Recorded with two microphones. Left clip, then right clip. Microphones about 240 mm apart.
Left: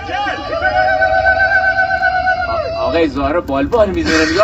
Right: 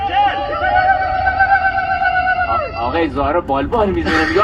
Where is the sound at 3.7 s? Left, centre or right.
Left.